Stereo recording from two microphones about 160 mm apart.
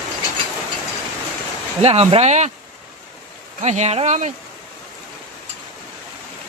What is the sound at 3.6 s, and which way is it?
Speech, 45° right (ahead or behind).